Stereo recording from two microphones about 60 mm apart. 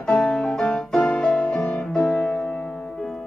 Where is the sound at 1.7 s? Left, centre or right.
Centre.